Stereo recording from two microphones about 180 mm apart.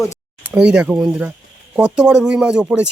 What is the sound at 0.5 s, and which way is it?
Speech, 5° right (ahead or behind).